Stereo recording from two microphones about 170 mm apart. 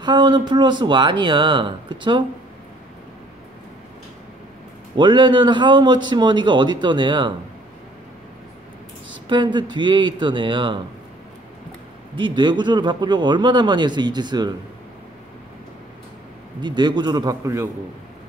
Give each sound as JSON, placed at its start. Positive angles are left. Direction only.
{"t": 0.0, "sound": "a man's voice", "side_deg": -25}
{"t": 4.9, "sound": "a man's voice", "side_deg": -30}
{"t": 9.1, "sound": "a man's voice", "side_deg": -25}
{"t": 12.2, "sound": "a man's voice", "side_deg": -30}
{"t": 16.6, "sound": "a man's voice", "side_deg": -25}